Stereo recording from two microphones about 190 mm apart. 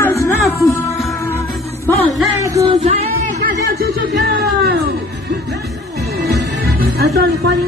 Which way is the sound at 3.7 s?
55° right (ahead or behind).